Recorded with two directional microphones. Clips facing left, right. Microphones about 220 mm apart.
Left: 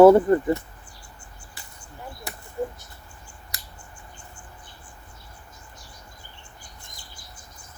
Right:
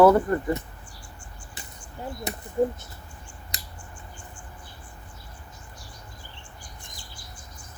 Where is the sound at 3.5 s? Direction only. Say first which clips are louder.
Right 2 dB; 20° right (ahead or behind).